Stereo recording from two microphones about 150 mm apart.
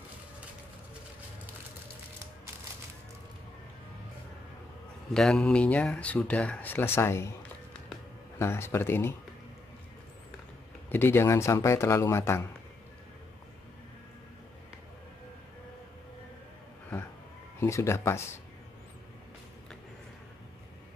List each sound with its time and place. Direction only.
5.1 s speech: 5° left (ahead or behind)
8.4 s speech: 15° left (ahead or behind)
10.9 s speech: 15° left (ahead or behind)
17.6 s speech: 20° left (ahead or behind)